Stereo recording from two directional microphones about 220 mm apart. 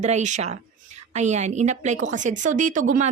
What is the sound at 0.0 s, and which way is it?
Speech, 35° right (ahead or behind).